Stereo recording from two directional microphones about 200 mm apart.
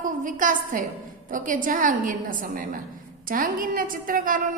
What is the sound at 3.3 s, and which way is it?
A woman's voice, 45° right (ahead or behind).